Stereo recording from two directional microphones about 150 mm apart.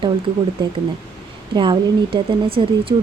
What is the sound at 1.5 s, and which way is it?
Speech, 30° right (ahead or behind).